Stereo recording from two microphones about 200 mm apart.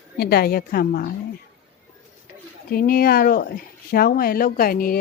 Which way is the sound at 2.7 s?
45° left (ahead or behind).